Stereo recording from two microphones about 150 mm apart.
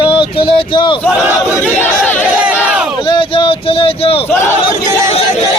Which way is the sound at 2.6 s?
5° right (ahead or behind).